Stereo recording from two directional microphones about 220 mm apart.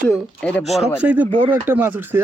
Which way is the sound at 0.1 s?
5° left (ahead or behind).